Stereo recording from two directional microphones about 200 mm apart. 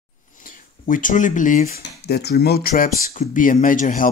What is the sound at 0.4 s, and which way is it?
Speech, 45° left (ahead or behind).